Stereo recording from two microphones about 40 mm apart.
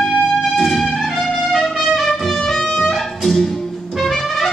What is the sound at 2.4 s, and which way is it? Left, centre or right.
Music, centre.